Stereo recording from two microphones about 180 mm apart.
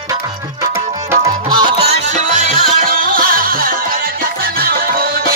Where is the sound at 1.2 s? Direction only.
25° right (ahead or behind).